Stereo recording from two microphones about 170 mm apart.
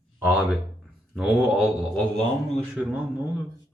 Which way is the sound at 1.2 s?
5° right (ahead or behind).